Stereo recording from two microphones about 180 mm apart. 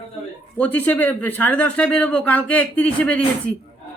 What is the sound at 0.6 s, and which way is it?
Speech, 10° left (ahead or behind).